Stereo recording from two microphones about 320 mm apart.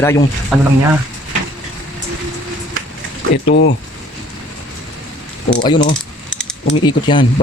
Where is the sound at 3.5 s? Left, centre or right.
Left.